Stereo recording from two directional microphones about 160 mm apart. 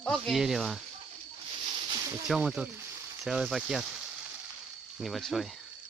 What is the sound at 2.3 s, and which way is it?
Speech, 5° right (ahead or behind).